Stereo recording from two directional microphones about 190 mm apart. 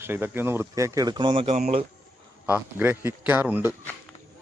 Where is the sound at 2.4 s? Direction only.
10° right (ahead or behind).